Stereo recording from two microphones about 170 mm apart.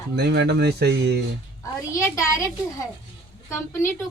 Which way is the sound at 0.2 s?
75° right (ahead or behind).